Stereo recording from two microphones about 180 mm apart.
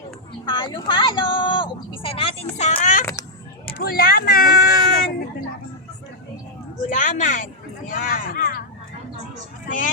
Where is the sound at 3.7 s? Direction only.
55° left (ahead or behind).